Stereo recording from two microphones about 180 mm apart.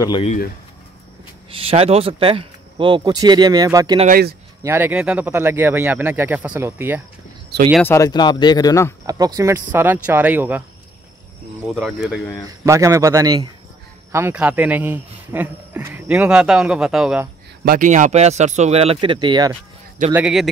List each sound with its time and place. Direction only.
1.5 s speech: 30° right (ahead or behind)
4.1 s speech: 60° right (ahead or behind)
4.6 s speech: 10° right (ahead or behind)
7.8 s speech: 15° left (ahead or behind)
9.0 s speech: 20° right (ahead or behind)
11.7 s speech: centre (ahead or behind)
12.6 s speech: 15° right (ahead or behind)
17.6 s speech: 45° right (ahead or behind); by 19.6 s 25° right (ahead or behind)
20.1 s speech: 5° right (ahead or behind)